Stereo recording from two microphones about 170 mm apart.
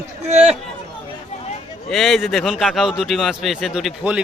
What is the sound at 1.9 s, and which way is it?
A man's voice, centre (ahead or behind).